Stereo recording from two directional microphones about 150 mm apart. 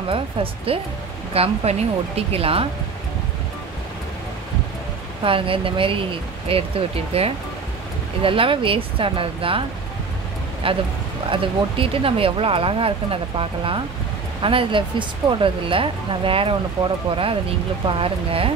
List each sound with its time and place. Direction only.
0.1 s a woman's voice: 40° right (ahead or behind)
5.2 s a woman's voice: 35° right (ahead or behind)